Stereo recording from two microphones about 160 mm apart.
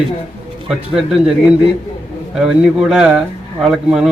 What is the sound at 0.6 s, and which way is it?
Speech, centre (ahead or behind).